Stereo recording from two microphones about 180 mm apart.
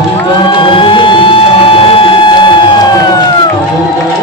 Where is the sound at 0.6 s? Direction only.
30° left (ahead or behind).